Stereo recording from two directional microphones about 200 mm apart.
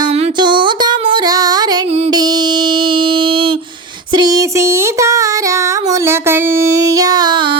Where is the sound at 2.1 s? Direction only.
20° right (ahead or behind).